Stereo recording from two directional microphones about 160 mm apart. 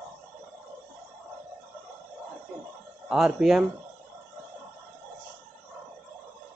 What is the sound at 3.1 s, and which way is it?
Speech, 5° right (ahead or behind).